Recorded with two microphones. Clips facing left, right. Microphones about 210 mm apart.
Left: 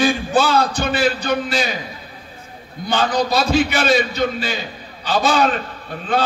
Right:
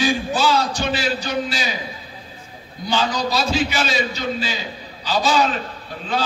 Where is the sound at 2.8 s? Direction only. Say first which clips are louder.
Left 3 dB; 55° left (ahead or behind).